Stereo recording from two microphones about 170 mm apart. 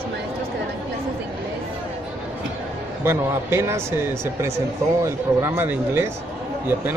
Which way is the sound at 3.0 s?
15° right (ahead or behind).